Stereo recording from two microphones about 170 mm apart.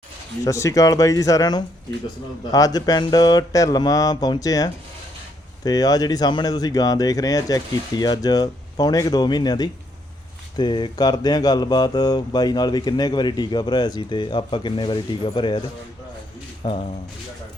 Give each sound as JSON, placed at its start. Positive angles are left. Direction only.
{"t": 0.4, "sound": "speech", "side_deg": 20}
{"t": 16.6, "sound": "speech", "side_deg": 30}